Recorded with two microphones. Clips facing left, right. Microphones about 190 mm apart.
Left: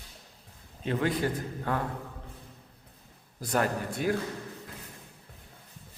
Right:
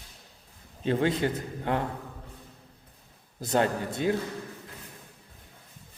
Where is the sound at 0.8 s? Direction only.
25° right (ahead or behind).